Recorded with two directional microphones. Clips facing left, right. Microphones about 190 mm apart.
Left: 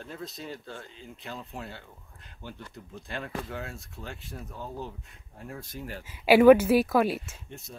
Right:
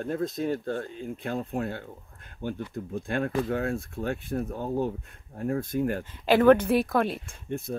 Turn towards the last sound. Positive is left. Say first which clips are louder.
# right 13 dB
turn(degrees=-55)  # may be behind; listen again after turning